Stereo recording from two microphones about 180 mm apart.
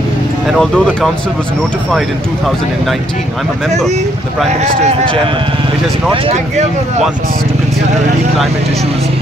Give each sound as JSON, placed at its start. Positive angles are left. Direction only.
{"t": 0.5, "sound": "speech", "side_deg": 0}
{"t": 4.5, "sound": "speech", "side_deg": -40}